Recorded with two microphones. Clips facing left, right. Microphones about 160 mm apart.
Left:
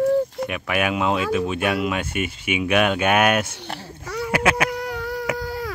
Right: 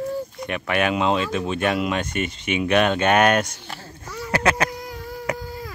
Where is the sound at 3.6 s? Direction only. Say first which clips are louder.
Left 4 dB; 70° left (ahead or behind).